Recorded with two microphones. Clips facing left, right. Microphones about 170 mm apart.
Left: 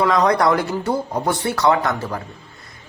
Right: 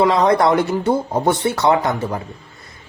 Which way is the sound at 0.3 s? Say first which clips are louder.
Right 2 dB; 25° right (ahead or behind).